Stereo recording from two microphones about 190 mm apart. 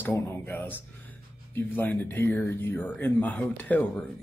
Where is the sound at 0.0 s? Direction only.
10° left (ahead or behind).